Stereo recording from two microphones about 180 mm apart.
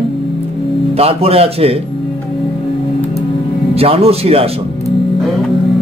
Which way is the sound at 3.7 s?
35° right (ahead or behind).